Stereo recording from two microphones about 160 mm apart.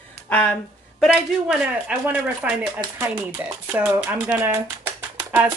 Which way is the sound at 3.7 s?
10° right (ahead or behind).